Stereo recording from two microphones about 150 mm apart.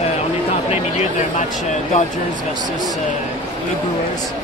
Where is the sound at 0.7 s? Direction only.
50° left (ahead or behind).